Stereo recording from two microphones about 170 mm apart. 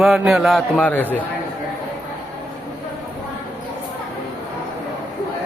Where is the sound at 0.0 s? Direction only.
Centre (ahead or behind).